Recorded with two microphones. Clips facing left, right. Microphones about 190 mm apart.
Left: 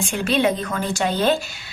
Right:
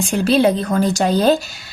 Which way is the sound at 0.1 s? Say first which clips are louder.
Right 6 dB; 35° right (ahead or behind).